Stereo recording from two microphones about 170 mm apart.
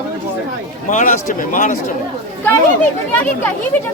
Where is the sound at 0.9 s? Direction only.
50° left (ahead or behind).